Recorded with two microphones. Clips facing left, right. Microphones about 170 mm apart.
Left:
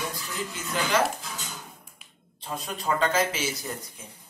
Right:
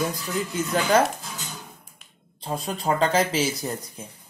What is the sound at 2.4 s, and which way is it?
Speech, 35° right (ahead or behind).